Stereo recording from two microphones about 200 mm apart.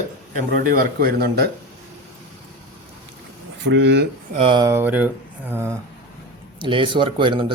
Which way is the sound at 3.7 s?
60° right (ahead or behind).